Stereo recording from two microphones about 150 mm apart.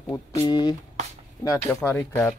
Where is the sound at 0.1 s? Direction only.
25° left (ahead or behind).